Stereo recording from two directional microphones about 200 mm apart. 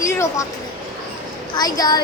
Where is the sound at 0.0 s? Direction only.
15° left (ahead or behind).